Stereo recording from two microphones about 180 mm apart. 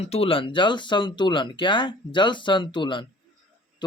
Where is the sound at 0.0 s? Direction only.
35° left (ahead or behind).